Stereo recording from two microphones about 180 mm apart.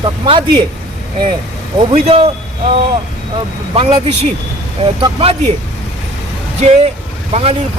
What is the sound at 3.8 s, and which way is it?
Speech, 30° right (ahead or behind).